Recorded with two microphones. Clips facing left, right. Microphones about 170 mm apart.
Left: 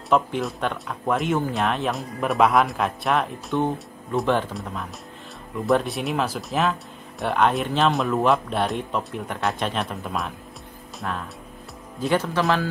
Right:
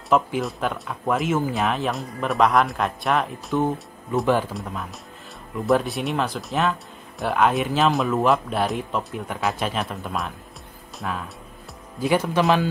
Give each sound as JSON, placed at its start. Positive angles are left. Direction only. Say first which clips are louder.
{"t": 0.1, "sound": "speech", "louder": "right 1 dB", "side_deg": 0}